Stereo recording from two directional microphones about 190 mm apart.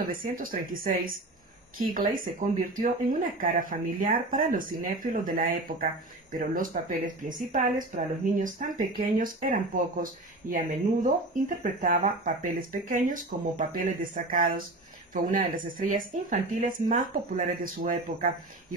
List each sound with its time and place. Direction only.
0.0 s speech: 50° right (ahead or behind)